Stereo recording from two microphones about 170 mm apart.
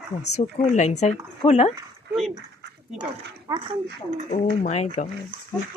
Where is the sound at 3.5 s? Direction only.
20° right (ahead or behind).